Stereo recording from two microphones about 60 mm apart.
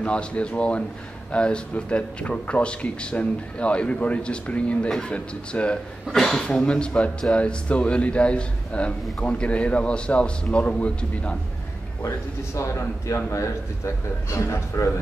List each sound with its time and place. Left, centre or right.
0.0 s speech: centre
6.1 s speech: centre
6.4 s speech: centre
12.5 s a man's voice: left